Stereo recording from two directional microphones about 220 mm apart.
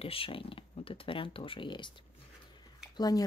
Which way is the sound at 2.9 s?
15° left (ahead or behind).